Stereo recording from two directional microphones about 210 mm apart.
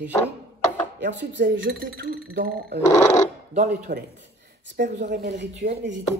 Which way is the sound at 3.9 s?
35° right (ahead or behind).